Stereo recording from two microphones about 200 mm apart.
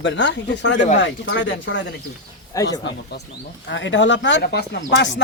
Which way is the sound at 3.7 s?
65° left (ahead or behind).